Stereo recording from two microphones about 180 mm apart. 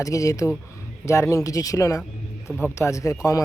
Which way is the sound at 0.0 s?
20° left (ahead or behind).